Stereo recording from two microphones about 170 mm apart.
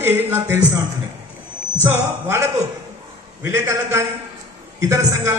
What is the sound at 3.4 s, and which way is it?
Speech, 15° right (ahead or behind).